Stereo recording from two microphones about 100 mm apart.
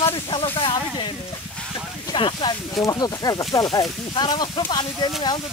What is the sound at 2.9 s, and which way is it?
Speech, 40° left (ahead or behind).